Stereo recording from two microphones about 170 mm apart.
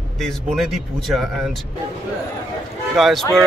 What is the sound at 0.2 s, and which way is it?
A man's voice, centre (ahead or behind).